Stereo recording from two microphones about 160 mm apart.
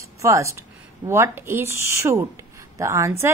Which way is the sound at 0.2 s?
20° right (ahead or behind).